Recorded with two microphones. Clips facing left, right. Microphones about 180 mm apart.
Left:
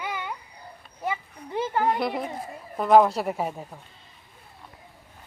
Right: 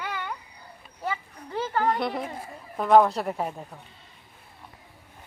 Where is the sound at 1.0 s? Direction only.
15° left (ahead or behind).